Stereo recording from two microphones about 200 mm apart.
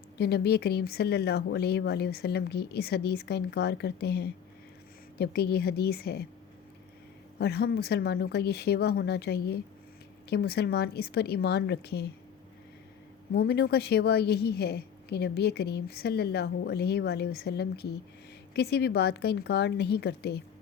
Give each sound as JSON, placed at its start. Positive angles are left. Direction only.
{"t": 0.2, "sound": "speech", "side_deg": 55}
{"t": 7.3, "sound": "a woman's voice", "side_deg": 55}
{"t": 13.3, "sound": "a woman's voice", "side_deg": 55}